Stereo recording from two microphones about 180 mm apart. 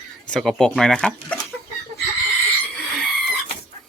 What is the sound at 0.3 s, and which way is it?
Speech, centre (ahead or behind).